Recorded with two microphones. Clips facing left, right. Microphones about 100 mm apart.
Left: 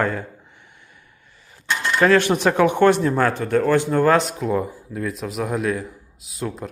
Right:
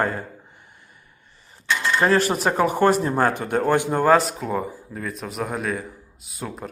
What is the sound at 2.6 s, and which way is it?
Speech, 35° right (ahead or behind).